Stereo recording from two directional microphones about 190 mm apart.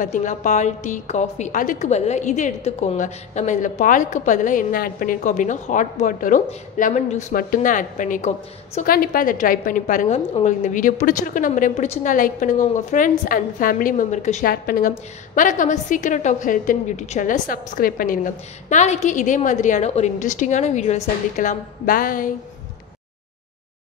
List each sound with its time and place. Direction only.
0.0 s a woman's voice: 40° left (ahead or behind)
14.5 s a woman's voice: 50° left (ahead or behind)